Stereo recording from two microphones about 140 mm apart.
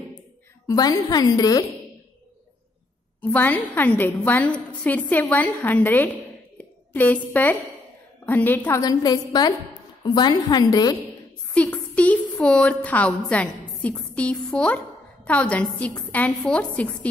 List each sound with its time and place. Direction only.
0.7 s a woman's voice: 25° left (ahead or behind)
3.2 s a woman's voice: 10° left (ahead or behind)
8.8 s a woman's voice: 30° left (ahead or behind)
11.5 s a woman's voice: 10° left (ahead or behind)